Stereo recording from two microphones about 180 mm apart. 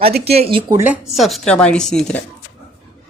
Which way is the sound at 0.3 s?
30° right (ahead or behind).